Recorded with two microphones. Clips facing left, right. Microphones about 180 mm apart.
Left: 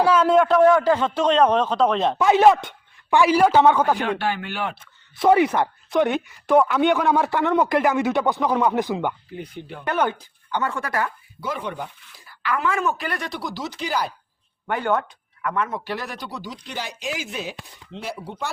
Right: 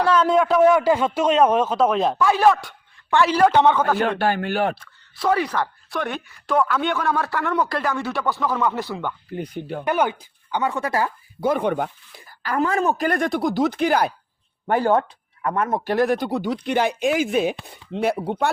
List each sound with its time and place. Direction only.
0.0 s a man's voice: 5° left (ahead or behind)
2.1 s a man's voice: 20° left (ahead or behind)
3.9 s speech: 45° right (ahead or behind)
4.8 s speech: 20° left (ahead or behind)
9.3 s speech: 45° right (ahead or behind)
9.8 s a man's voice: 10° right (ahead or behind)
11.3 s speech: 50° right (ahead or behind)
12.3 s speech: 40° right (ahead or behind)
14.7 s speech: 35° right (ahead or behind)
15.5 s speech: 45° right (ahead or behind)